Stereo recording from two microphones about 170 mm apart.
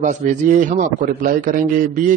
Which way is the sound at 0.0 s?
45° right (ahead or behind).